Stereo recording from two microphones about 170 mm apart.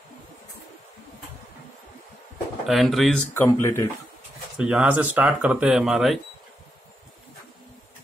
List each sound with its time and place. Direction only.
2.7 s speech: centre (ahead or behind)
3.3 s speech: 15° left (ahead or behind)
4.6 s speech: 5° right (ahead or behind)